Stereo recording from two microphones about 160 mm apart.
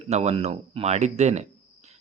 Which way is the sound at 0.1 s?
40° right (ahead or behind).